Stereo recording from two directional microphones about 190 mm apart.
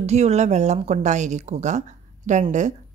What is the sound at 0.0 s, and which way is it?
Speech, 35° right (ahead or behind).